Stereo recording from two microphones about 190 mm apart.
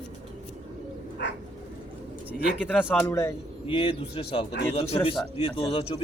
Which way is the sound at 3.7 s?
30° left (ahead or behind).